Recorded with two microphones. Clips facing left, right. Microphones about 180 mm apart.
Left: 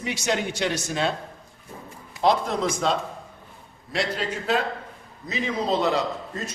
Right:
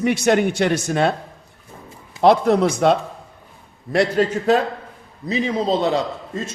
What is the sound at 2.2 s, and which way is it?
Speech, 65° right (ahead or behind).